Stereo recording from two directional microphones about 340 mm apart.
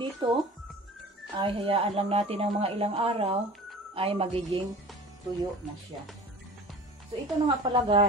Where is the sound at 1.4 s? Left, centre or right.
Centre.